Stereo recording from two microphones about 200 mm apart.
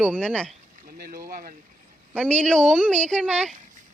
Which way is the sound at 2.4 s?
5° left (ahead or behind).